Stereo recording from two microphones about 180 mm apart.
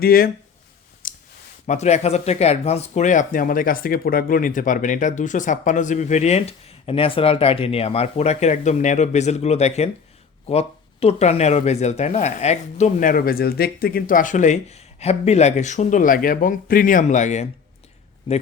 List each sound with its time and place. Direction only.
0.0 s speech: 55° left (ahead or behind)
1.0 s clicking: 50° left (ahead or behind)
1.6 s speech: 40° left (ahead or behind)